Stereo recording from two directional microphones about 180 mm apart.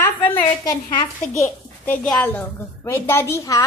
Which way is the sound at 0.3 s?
25° left (ahead or behind).